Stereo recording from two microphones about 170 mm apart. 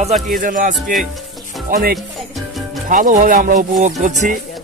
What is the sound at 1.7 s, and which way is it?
Music, 65° right (ahead or behind).